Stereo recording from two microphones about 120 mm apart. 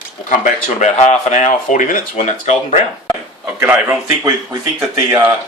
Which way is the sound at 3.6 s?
20° right (ahead or behind).